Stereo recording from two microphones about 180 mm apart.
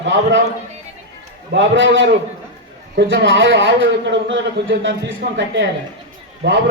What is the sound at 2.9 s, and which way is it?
A man's voice, 75° right (ahead or behind).